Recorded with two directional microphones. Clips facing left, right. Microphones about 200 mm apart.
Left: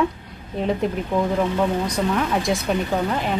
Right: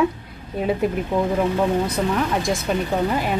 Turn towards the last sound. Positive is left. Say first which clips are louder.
# right 1 dB
turn(degrees=-5)  # may be behind; listen again after turning